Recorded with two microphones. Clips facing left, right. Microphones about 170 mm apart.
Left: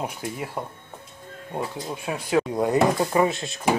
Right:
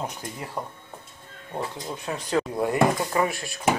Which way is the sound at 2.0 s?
10° left (ahead or behind).